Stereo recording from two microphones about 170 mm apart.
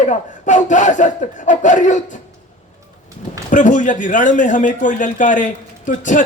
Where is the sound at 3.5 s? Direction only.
45° left (ahead or behind).